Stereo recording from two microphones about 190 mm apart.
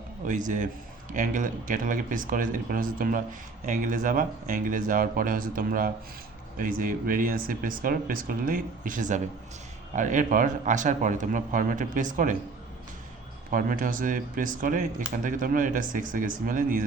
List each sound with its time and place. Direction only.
0.3 s a man's voice: 40° right (ahead or behind)
13.5 s speech: 45° right (ahead or behind)